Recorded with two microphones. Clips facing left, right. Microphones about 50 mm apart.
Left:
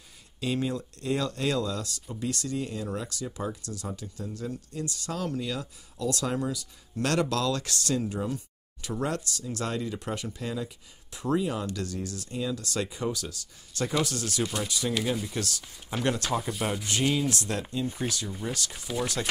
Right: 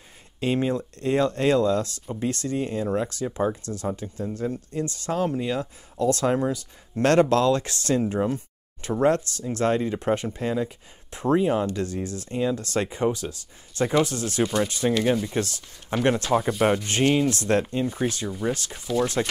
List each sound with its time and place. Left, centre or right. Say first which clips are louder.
0.4 s speech: right 6 dB; right
14.4 s speech: right 8 dB; centre
14.7 s speech: right 7 dB; right